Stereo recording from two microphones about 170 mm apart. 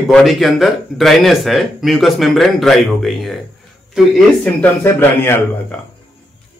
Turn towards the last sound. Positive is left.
turn(degrees=15)  # may be behind; listen again after turning